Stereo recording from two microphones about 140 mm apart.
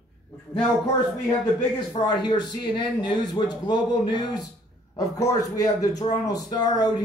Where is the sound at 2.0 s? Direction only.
30° left (ahead or behind).